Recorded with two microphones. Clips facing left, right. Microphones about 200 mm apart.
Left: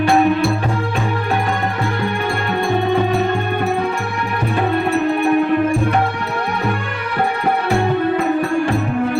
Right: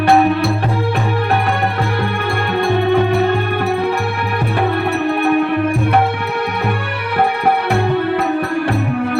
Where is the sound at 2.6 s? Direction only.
60° right (ahead or behind).